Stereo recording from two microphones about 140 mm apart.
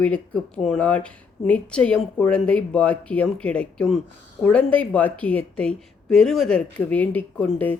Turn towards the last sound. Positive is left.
turn(degrees=10)  # may be behind; listen again after turning